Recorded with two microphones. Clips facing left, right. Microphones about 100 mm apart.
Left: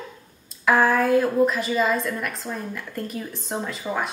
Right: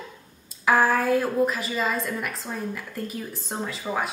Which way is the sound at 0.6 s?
Centre (ahead or behind).